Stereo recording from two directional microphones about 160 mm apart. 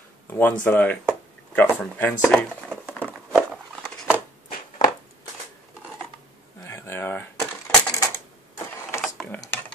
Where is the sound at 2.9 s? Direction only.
10° left (ahead or behind).